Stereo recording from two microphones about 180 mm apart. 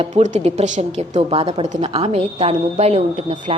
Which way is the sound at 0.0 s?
40° right (ahead or behind).